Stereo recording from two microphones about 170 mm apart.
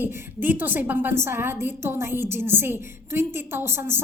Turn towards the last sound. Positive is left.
turn(degrees=-15)  # may be behind; listen again after turning